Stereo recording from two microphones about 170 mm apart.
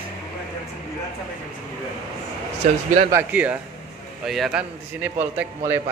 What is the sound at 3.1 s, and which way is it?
A man's voice, 10° right (ahead or behind).